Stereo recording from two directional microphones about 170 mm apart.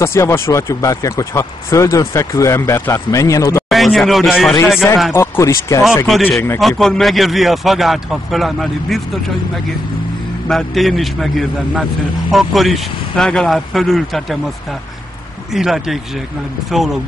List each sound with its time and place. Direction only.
0.0 s speech: 15° left (ahead or behind)
3.7 s speech: centre (ahead or behind)
5.1 s speech: 15° left (ahead or behind)
6.8 s speech: centre (ahead or behind)
10.5 s speech: centre (ahead or behind)
15.5 s speech: centre (ahead or behind)